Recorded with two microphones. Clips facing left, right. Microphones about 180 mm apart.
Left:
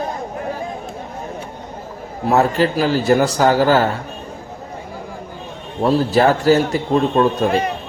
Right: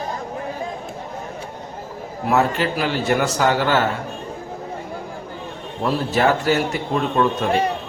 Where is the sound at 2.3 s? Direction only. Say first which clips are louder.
Left 4 dB; 35° left (ahead or behind).